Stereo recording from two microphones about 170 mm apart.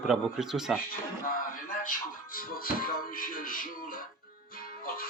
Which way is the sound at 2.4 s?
60° left (ahead or behind).